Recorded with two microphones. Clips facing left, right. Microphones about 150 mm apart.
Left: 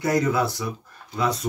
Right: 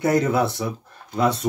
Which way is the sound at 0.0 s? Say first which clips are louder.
Right 2 dB; 25° right (ahead or behind).